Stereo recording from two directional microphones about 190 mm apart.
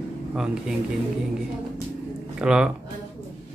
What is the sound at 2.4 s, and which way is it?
Speech, 5° right (ahead or behind).